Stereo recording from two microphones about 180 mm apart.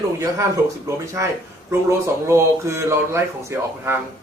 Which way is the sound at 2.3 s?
15° right (ahead or behind).